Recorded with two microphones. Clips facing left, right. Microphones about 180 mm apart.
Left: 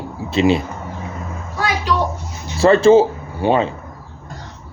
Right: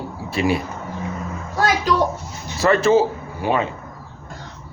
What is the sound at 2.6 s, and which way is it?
Speech, 30° left (ahead or behind).